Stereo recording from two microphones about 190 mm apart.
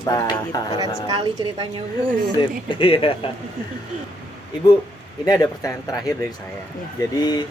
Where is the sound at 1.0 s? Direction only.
20° right (ahead or behind).